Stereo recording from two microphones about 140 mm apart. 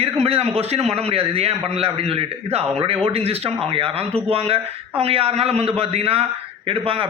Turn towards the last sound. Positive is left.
turn(degrees=-40)  # may be behind; listen again after turning